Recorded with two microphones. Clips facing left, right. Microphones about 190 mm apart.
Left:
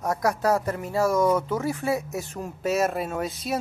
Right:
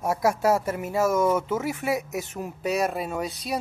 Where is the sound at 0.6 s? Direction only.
20° right (ahead or behind).